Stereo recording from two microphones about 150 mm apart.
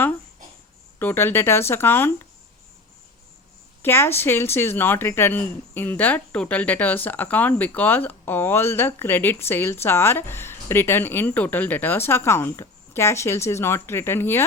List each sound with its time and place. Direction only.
0.9 s a woman's voice: 15° left (ahead or behind)
3.8 s a woman's voice: 15° left (ahead or behind)